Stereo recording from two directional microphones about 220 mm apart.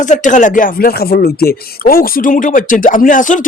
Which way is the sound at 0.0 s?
35° left (ahead or behind).